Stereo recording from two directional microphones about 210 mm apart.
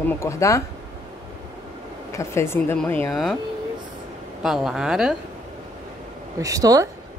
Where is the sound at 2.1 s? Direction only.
10° left (ahead or behind).